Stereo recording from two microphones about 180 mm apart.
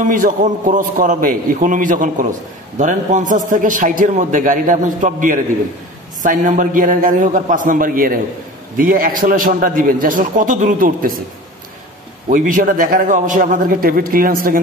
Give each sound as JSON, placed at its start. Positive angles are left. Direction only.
{"t": 0.0, "sound": "a man's voice", "side_deg": -45}
{"t": 12.3, "sound": "a man's voice", "side_deg": -50}